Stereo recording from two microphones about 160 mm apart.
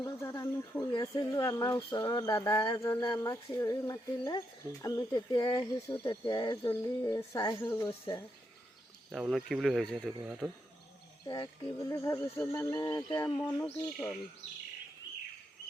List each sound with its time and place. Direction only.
0.0 s speech: 20° left (ahead or behind)
9.1 s speech: centre (ahead or behind)
11.3 s speech: 20° left (ahead or behind)